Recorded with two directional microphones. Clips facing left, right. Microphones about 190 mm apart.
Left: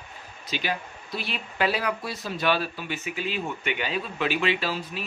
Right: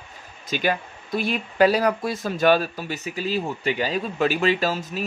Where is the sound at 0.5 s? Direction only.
50° right (ahead or behind).